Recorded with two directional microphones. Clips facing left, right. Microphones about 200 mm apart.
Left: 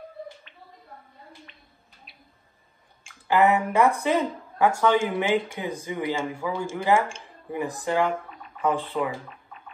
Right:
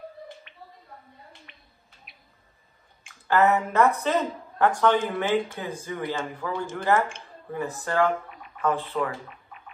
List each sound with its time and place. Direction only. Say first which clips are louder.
3.3 s speech: left 1 dB; 15° left (ahead or behind)